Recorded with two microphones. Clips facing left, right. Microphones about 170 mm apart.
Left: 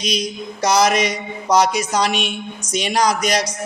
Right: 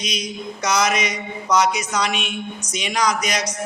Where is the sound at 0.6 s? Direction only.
35° left (ahead or behind).